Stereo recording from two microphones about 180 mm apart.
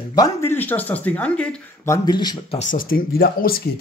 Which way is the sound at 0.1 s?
15° left (ahead or behind).